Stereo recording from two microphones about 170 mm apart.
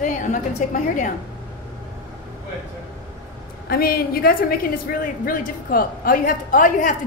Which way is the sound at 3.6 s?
60° left (ahead or behind).